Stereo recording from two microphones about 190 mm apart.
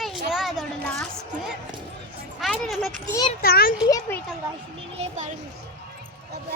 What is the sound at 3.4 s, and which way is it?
Speech, 50° left (ahead or behind).